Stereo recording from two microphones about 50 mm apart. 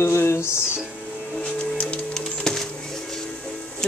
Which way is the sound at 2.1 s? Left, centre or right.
Centre.